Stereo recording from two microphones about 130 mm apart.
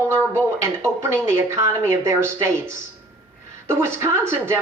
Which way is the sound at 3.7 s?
20° right (ahead or behind).